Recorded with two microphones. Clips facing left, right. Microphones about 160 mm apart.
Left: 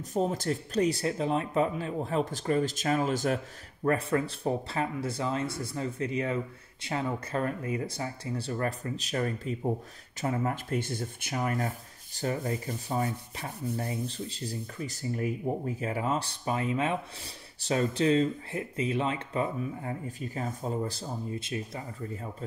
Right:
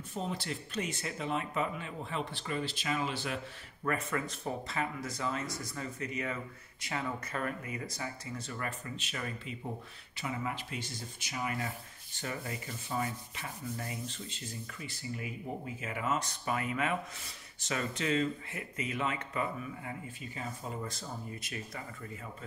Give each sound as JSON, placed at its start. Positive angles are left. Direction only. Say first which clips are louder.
{"t": 0.1, "sound": "speech", "louder": "left 9 dB", "side_deg": 40}
{"t": 3.8, "sound": "speech", "louder": "left 7 dB", "side_deg": 35}
{"t": 20.8, "sound": "speech", "louder": "left 7 dB", "side_deg": 30}